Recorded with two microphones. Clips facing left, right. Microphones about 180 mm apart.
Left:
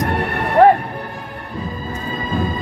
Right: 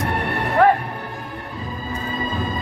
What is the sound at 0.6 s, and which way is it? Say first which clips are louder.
Music: left 5 dB; 30° left (ahead or behind).